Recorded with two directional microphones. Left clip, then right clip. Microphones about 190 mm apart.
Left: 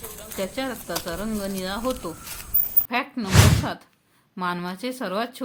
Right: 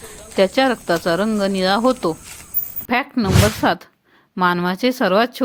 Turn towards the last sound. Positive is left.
turn(degrees=-40)  # may be behind; listen again after turning